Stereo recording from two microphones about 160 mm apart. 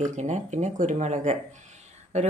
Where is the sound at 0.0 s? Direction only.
50° right (ahead or behind).